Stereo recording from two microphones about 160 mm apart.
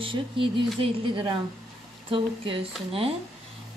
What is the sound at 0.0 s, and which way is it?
A woman's voice, 30° right (ahead or behind).